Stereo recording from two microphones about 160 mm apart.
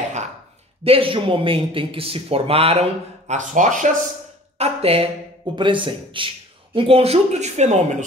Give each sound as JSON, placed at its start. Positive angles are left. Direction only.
{"t": 0.8, "sound": "speech", "side_deg": -35}
{"t": 4.6, "sound": "speech", "side_deg": -40}